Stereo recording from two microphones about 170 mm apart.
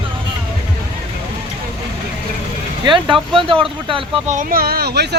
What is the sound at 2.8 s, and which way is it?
Speech, 30° right (ahead or behind).